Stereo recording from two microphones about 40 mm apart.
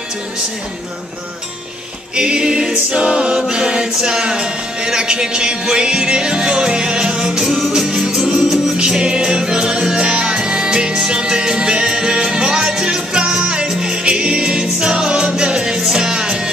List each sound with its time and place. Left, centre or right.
2.1 s a capella: right
7.7 s music: centre